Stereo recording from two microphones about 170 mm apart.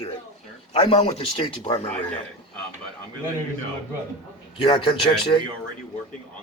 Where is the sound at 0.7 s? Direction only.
30° left (ahead or behind).